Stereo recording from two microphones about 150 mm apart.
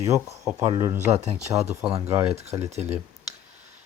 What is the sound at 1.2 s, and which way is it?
Speech, 45° right (ahead or behind).